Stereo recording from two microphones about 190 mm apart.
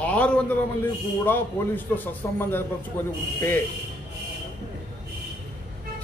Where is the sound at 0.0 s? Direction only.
5° left (ahead or behind).